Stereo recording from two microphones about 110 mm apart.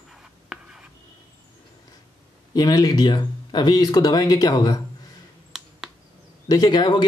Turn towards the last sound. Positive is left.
turn(degrees=45)  # may be behind; listen again after turning